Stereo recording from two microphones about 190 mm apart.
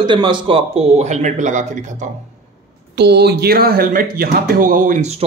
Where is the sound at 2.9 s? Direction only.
60° right (ahead or behind); by 5.2 s 40° right (ahead or behind).